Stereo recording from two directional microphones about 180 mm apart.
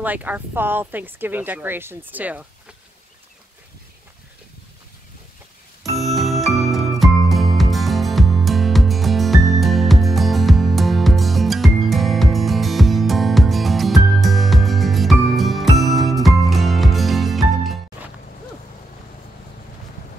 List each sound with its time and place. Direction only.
0.0 s speech: 10° right (ahead or behind)
5.9 s music: centre (ahead or behind)